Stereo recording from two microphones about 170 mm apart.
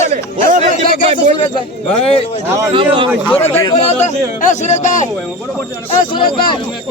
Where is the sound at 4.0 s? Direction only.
45° left (ahead or behind).